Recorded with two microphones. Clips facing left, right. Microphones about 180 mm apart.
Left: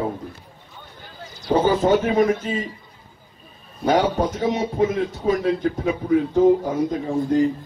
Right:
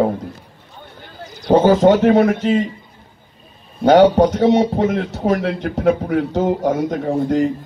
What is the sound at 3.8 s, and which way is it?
Speech, 75° right (ahead or behind).